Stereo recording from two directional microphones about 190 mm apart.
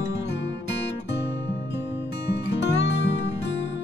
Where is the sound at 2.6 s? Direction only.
65° left (ahead or behind).